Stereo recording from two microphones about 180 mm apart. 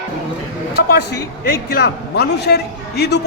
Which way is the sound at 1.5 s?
60° left (ahead or behind).